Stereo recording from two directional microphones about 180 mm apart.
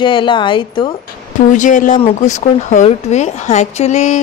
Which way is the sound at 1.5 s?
45° left (ahead or behind).